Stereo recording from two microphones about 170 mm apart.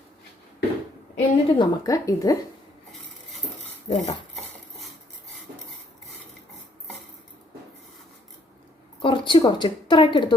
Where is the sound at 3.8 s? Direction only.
40° left (ahead or behind).